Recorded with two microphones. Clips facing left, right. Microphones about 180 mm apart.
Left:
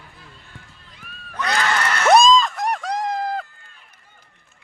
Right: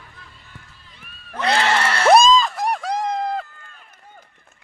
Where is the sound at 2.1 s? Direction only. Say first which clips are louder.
Even; 5° right (ahead or behind).